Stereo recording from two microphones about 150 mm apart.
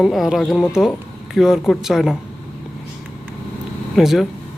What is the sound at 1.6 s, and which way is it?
Speech, centre (ahead or behind).